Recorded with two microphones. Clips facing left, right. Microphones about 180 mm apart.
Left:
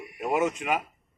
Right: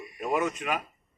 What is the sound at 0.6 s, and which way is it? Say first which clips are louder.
Speech: left 3 dB; 25° left (ahead or behind).